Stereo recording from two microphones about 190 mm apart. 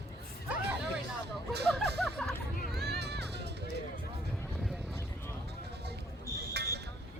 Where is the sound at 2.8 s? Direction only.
60° right (ahead or behind).